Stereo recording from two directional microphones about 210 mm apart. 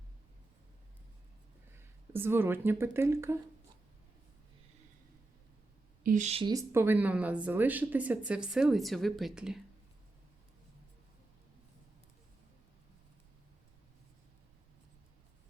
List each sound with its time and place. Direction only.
1.7 s speech: 10° right (ahead or behind)
6.0 s a woman's voice: 40° right (ahead or behind)
6.5 s a woman's voice: 15° right (ahead or behind)